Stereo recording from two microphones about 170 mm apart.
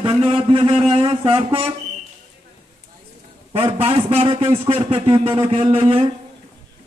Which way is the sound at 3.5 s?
35° right (ahead or behind).